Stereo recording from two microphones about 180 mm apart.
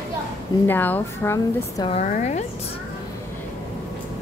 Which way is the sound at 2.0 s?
45° left (ahead or behind).